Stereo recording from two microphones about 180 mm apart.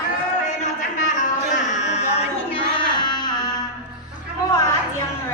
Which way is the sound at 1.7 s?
40° left (ahead or behind).